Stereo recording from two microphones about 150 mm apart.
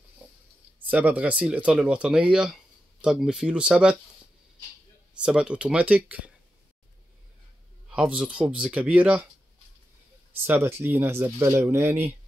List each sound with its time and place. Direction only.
0.7 s speech: 10° right (ahead or behind)
5.2 s speech: 5° right (ahead or behind)
7.9 s speech: 5° right (ahead or behind)
10.3 s speech: 15° right (ahead or behind)